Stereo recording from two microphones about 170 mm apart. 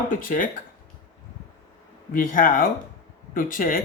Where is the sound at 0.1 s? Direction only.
55° left (ahead or behind).